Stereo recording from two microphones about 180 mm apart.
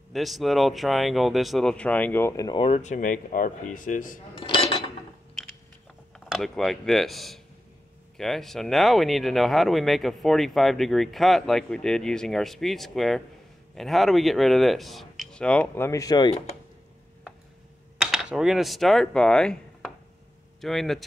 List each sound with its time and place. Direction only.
0.1 s speech: centre (ahead or behind); by 2.7 s 25° left (ahead or behind)
2.7 s speech: 40° left (ahead or behind)
4.4 s cutlery: 30° left (ahead or behind)
6.1 s speech: centre (ahead or behind); by 16.3 s 20° left (ahead or behind)
18.0 s speech: 5° right (ahead or behind)